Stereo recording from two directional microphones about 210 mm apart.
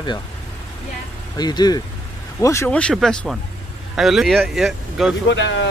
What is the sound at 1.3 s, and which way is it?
Speech, 20° left (ahead or behind).